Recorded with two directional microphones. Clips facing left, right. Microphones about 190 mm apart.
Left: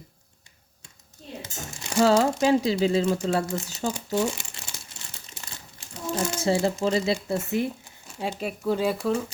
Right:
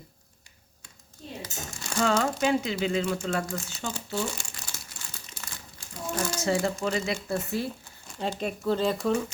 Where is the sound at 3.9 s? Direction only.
20° left (ahead or behind).